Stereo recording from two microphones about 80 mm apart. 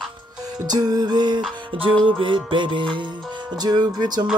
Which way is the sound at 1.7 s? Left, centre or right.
Right.